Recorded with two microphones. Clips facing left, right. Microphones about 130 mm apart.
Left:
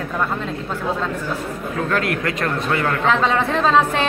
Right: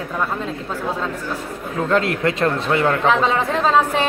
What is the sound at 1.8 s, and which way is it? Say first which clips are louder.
A man's voice: right 4 dB; 25° right (ahead or behind).